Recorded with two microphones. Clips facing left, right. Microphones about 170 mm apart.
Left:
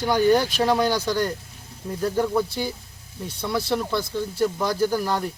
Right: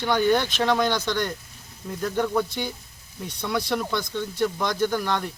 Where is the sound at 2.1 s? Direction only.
5° left (ahead or behind).